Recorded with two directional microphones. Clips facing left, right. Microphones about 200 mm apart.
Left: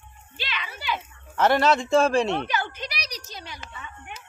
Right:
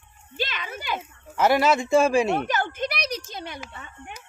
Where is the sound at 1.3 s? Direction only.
10° right (ahead or behind).